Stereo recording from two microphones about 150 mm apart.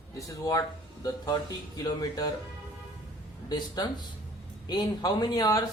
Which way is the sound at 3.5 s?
30° left (ahead or behind).